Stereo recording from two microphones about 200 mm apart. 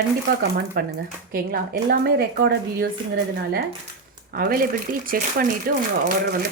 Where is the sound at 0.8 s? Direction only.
50° right (ahead or behind).